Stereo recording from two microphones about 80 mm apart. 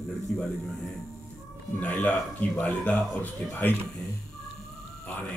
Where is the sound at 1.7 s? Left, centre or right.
Centre.